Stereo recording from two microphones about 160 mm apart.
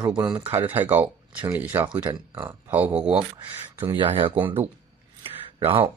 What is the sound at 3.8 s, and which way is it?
Speech, 30° right (ahead or behind).